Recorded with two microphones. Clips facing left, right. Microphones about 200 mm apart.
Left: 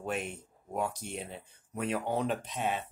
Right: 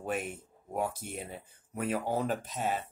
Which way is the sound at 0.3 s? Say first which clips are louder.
Even; 5° right (ahead or behind).